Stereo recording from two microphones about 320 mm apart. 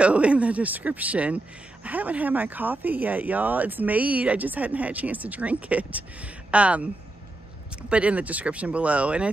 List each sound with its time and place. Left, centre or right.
0.0 s a man's voice: centre